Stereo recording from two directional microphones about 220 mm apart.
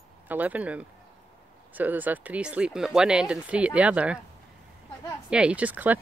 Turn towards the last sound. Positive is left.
turn(degrees=-5)  # may be behind; listen again after turning